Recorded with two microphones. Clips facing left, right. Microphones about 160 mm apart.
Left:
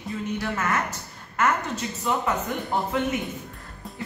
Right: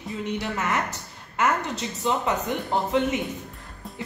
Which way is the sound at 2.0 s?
20° right (ahead or behind).